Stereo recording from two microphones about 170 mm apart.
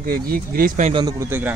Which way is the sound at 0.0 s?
60° right (ahead or behind).